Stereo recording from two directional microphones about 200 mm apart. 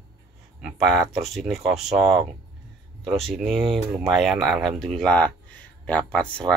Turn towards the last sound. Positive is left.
turn(degrees=5)  # may be behind; listen again after turning